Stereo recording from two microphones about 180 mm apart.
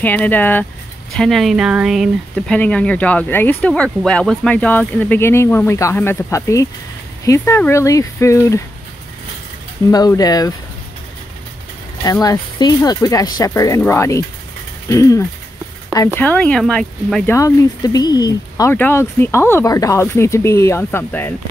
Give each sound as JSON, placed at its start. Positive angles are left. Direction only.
{"t": 0.0, "sound": "speech", "side_deg": 10}
{"t": 9.8, "sound": "speech", "side_deg": 20}
{"t": 12.0, "sound": "speech", "side_deg": 20}
{"t": 16.2, "sound": "speech", "side_deg": 5}
{"t": 17.4, "sound": "speech", "side_deg": 20}